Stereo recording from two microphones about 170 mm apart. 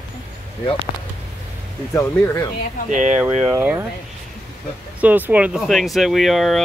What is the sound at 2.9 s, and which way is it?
Speech, 45° right (ahead or behind).